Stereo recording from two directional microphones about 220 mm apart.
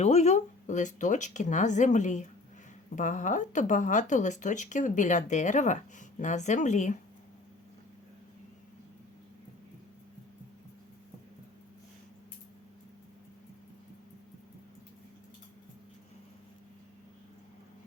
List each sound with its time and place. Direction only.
0.0 s speech: 30° left (ahead or behind)